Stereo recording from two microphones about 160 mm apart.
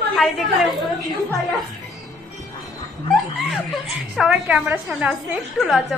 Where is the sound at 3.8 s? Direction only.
Centre (ahead or behind).